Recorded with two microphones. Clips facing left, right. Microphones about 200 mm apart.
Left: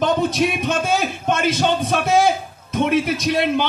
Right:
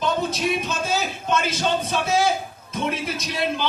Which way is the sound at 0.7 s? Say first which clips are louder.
Left 5 dB; 60° left (ahead or behind).